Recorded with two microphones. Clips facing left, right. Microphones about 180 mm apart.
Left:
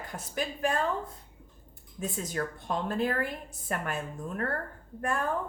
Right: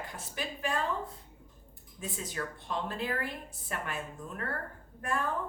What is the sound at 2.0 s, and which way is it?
A woman's voice, 45° left (ahead or behind).